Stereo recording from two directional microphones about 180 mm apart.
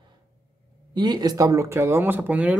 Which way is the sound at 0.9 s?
25° right (ahead or behind).